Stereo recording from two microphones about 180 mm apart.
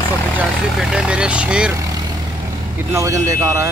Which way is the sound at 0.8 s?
5° right (ahead or behind).